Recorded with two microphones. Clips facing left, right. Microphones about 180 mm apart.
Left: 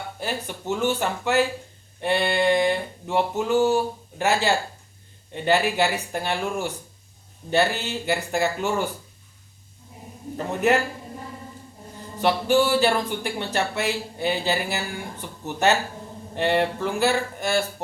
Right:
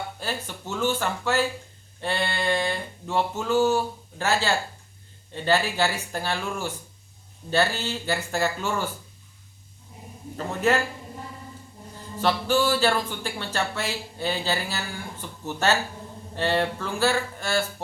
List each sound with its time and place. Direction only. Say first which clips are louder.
0.2 s speech: left 3 dB; 15° left (ahead or behind)
10.3 s speech: left 2 dB; 20° left (ahead or behind)
12.2 s speech: left 3 dB; 15° left (ahead or behind)